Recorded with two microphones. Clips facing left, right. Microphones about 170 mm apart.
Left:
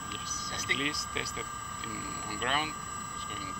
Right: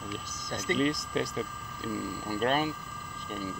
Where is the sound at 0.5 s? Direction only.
45° right (ahead or behind).